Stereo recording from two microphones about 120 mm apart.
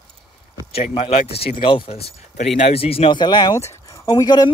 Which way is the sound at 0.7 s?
55° left (ahead or behind).